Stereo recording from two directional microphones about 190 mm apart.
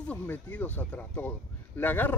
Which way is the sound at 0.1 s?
10° left (ahead or behind).